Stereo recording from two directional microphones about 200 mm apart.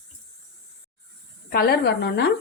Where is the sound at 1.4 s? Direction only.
50° left (ahead or behind).